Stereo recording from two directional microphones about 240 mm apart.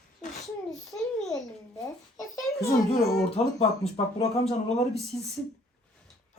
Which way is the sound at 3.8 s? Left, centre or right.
Left.